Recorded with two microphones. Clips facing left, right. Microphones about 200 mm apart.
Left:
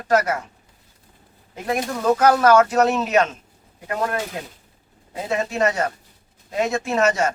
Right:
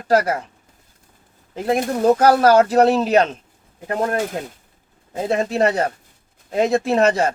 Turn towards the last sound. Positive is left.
turn(degrees=-35)  # may be behind; listen again after turning